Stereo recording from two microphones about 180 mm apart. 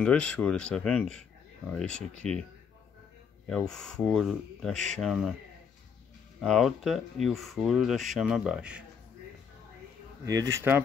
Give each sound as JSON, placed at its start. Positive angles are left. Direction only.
{"t": 0.0, "sound": "speech", "side_deg": 5}
{"t": 3.4, "sound": "speech", "side_deg": 5}
{"t": 6.4, "sound": "speech", "side_deg": 0}
{"t": 10.2, "sound": "speech", "side_deg": -20}